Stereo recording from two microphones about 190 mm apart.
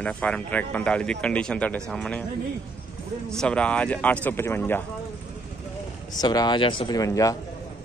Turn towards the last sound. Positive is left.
turn(degrees=20)  # may be behind; listen again after turning